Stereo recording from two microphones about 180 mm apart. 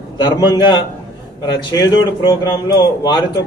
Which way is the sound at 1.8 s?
20° left (ahead or behind).